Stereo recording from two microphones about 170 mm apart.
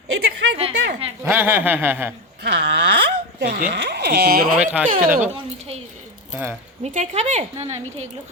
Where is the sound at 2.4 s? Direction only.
75° right (ahead or behind).